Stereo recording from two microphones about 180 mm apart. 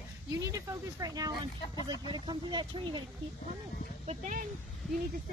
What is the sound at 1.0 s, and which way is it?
Speech, 20° right (ahead or behind).